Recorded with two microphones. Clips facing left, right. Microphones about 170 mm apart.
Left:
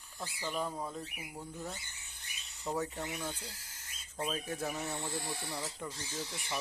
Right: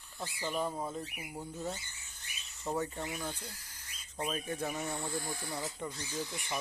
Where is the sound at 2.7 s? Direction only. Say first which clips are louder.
Right 1 dB; centre (ahead or behind).